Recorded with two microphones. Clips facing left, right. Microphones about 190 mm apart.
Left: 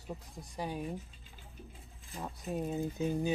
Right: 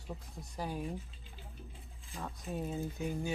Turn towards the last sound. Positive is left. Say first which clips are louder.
# left 4 dB
turn(degrees=20)  # may be behind; listen again after turning